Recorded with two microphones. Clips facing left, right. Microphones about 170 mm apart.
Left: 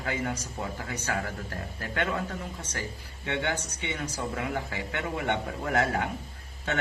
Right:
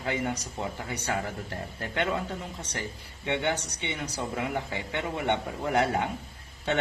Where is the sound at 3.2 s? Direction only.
20° right (ahead or behind).